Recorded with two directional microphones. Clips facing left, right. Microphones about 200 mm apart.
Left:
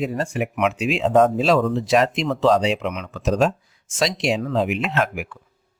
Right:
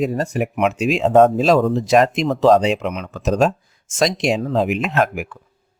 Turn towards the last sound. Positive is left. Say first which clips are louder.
# right 4 dB
turn(degrees=-45)  # may be behind; listen again after turning